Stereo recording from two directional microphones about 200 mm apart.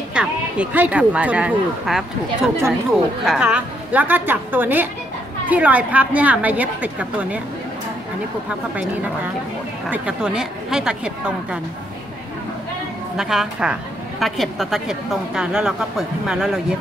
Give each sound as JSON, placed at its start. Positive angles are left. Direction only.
{"t": 0.1, "sound": "a woman's voice", "side_deg": -5}
{"t": 9.8, "sound": "speech", "side_deg": -5}
{"t": 13.1, "sound": "speech", "side_deg": 0}